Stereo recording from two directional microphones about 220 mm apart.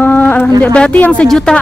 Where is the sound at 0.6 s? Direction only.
5° left (ahead or behind).